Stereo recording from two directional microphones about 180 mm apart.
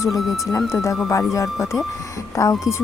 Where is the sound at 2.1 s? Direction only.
15° left (ahead or behind).